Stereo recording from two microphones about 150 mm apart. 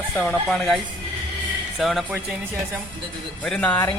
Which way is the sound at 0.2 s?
5° left (ahead or behind).